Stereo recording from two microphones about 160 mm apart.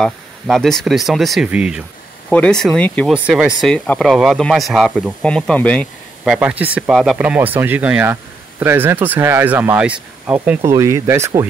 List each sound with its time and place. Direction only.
0.0 s speech: 5° left (ahead or behind)
2.2 s speech: 5° left (ahead or behind)
3.1 s speech: 5° right (ahead or behind)
3.6 s speech: 5° left (ahead or behind)
6.2 s speech: 5° right (ahead or behind)